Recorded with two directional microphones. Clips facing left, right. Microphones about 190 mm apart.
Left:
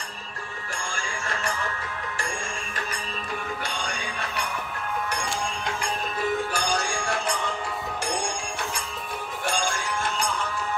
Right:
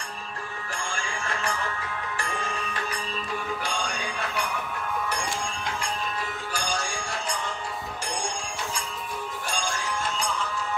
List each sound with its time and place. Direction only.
6.5 s music: 60° left (ahead or behind)